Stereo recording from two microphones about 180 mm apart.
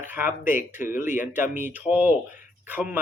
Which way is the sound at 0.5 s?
50° left (ahead or behind).